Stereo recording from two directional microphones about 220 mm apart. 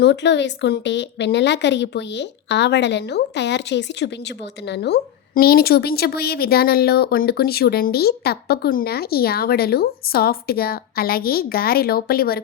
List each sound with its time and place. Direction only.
0.0 s a woman's voice: 50° left (ahead or behind)